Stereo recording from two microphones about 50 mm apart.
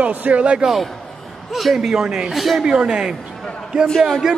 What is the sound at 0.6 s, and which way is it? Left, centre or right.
A man's voice, centre.